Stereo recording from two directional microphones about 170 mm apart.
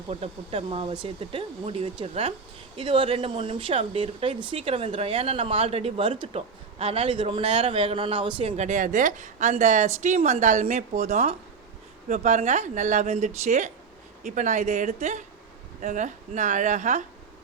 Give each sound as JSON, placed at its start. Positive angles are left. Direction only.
{"t": 0.1, "sound": "a woman's voice", "side_deg": -35}